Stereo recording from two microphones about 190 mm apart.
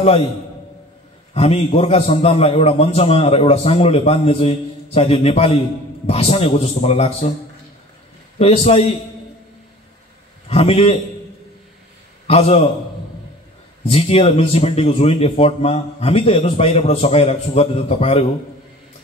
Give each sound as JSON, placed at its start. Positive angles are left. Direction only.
{"t": 1.3, "sound": "speech", "side_deg": 30}
{"t": 8.4, "sound": "speech", "side_deg": 30}
{"t": 10.5, "sound": "speech", "side_deg": 30}
{"t": 12.3, "sound": "speech", "side_deg": 30}
{"t": 13.9, "sound": "speech", "side_deg": 30}